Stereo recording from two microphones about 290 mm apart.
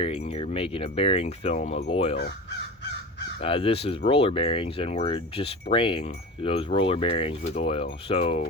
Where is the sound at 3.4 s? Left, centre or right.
Centre.